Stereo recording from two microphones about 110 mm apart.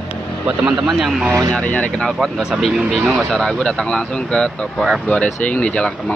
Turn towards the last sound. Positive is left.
turn(degrees=10)  # may be behind; listen again after turning